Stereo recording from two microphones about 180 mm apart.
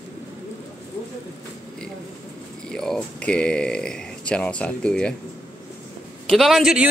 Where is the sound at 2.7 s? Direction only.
5° left (ahead or behind).